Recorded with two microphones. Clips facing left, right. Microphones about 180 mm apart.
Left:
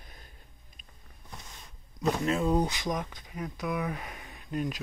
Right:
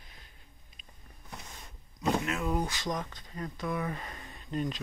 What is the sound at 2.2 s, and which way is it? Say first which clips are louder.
Speech: left 5 dB; 25° left (ahead or behind).